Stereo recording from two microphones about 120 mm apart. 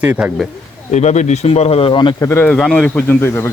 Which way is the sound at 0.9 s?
75° left (ahead or behind).